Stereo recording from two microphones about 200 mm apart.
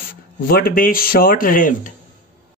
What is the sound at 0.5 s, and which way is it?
Speech, 50° left (ahead or behind).